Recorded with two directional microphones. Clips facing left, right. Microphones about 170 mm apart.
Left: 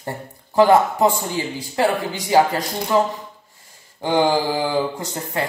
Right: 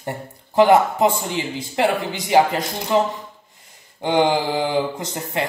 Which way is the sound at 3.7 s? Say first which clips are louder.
Even; 20° right (ahead or behind).